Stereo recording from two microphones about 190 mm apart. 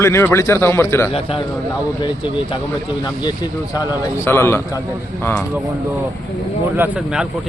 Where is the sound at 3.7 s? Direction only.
15° left (ahead or behind).